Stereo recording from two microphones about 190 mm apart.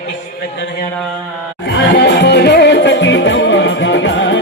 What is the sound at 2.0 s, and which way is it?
Music, 60° left (ahead or behind).